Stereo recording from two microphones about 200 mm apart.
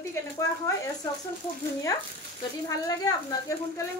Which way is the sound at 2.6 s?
15° left (ahead or behind).